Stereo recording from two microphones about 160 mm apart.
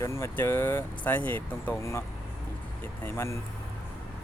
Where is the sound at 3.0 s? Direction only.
15° left (ahead or behind).